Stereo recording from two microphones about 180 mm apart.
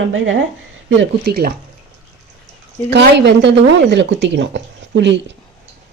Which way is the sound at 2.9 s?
75° right (ahead or behind).